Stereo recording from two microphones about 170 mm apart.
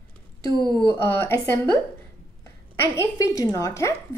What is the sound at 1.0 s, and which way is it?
Speech, 15° left (ahead or behind).